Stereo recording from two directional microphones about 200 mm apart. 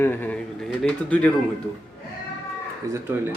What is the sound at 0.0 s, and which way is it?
Speech, 10° left (ahead or behind).